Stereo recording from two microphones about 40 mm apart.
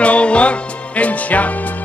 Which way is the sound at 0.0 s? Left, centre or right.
Left.